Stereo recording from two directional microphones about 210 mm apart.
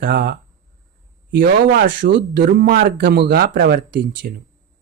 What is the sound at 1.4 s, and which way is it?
Speech, 45° right (ahead or behind).